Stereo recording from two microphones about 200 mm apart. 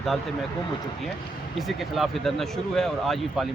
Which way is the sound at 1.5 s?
Centre (ahead or behind).